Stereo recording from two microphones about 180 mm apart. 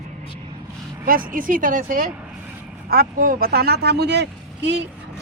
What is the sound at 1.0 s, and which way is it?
Speech, 50° right (ahead or behind).